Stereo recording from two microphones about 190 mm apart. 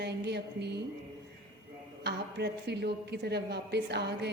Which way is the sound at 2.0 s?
60° right (ahead or behind).